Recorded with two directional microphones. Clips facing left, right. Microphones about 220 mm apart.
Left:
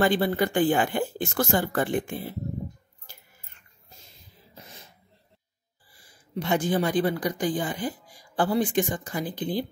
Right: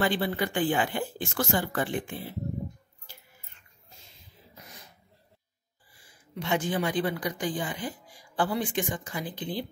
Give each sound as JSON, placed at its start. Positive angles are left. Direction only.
{"t": 0.0, "sound": "speech", "side_deg": 45}
{"t": 4.6, "sound": "music", "side_deg": 25}
{"t": 6.0, "sound": "speech", "side_deg": 40}